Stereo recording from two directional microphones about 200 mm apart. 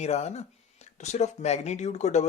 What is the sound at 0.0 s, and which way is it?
Speech, 35° left (ahead or behind).